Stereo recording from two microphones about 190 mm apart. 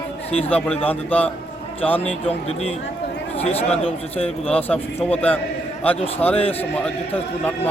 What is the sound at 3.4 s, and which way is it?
Speech, 30° left (ahead or behind).